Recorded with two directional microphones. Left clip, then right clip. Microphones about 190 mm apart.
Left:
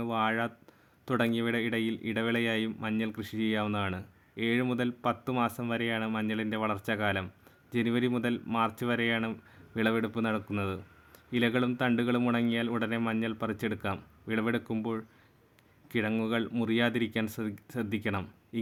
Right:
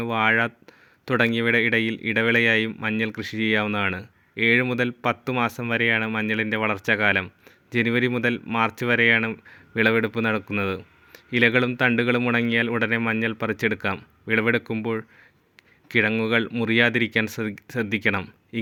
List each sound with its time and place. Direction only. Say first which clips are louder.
0.0 s speech: right 9 dB; 25° right (ahead or behind)